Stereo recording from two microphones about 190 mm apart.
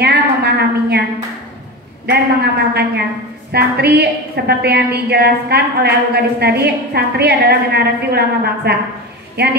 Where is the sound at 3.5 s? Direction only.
60° right (ahead or behind).